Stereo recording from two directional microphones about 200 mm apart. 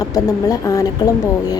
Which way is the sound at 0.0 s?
15° left (ahead or behind).